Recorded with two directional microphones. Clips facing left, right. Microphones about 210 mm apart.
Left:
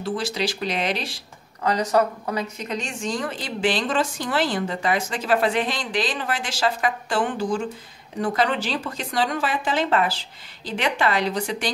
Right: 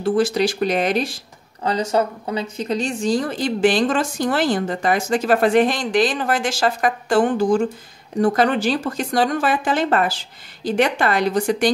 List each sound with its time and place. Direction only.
0.0 s speech: 50° right (ahead or behind)
1.6 s speech: 30° right (ahead or behind); by 11.7 s 50° right (ahead or behind)